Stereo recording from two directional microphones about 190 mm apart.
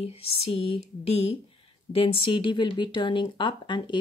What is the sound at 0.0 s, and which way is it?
Speech, 30° left (ahead or behind).